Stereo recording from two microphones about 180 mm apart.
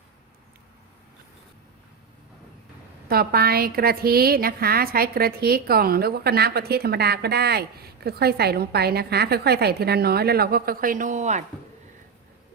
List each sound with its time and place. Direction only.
3.1 s a woman's voice: 60° right (ahead or behind); by 11.4 s 40° right (ahead or behind)